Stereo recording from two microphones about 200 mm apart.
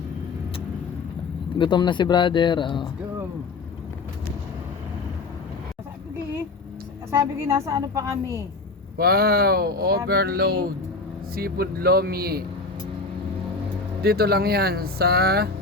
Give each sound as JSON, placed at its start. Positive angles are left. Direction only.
{"t": 1.5, "sound": "speech", "side_deg": 25}
{"t": 7.1, "sound": "a woman's voice", "side_deg": -15}
{"t": 9.0, "sound": "speech", "side_deg": -50}
{"t": 14.0, "sound": "speech", "side_deg": -50}